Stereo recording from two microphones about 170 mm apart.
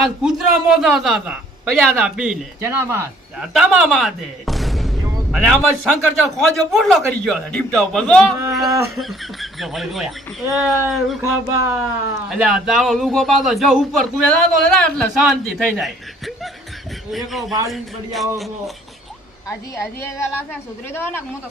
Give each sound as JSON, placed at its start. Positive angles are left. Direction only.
{"t": 0.0, "sound": "a man's voice", "side_deg": 0}
{"t": 2.6, "sound": "speech", "side_deg": -15}
{"t": 3.3, "sound": "a man's voice", "side_deg": -5}
{"t": 11.2, "sound": "speech", "side_deg": -15}
{"t": 12.3, "sound": "a man's voice", "side_deg": 0}
{"t": 20.0, "sound": "a woman's voice", "side_deg": 15}